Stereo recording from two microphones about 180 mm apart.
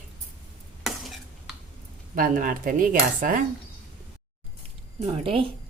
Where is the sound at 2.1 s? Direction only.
50° right (ahead or behind).